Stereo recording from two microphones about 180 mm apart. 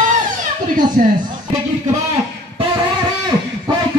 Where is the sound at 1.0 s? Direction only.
50° right (ahead or behind).